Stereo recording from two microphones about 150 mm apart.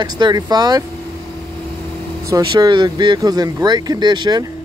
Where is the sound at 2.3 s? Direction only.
25° right (ahead or behind).